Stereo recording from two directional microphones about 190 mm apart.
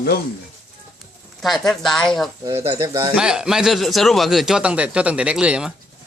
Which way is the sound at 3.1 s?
5° right (ahead or behind).